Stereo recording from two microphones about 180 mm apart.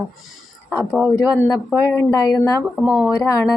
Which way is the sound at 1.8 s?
15° left (ahead or behind).